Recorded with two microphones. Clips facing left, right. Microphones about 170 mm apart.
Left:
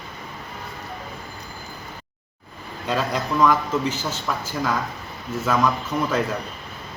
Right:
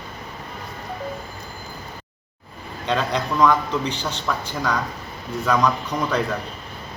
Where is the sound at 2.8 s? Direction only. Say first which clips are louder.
Right 1 dB; 5° left (ahead or behind).